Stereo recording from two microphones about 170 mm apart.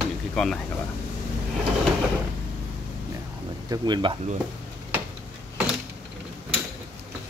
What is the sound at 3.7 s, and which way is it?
Speech, 25° right (ahead or behind).